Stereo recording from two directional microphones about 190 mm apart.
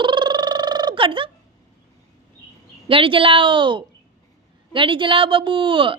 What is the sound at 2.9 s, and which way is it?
Speech, 30° right (ahead or behind).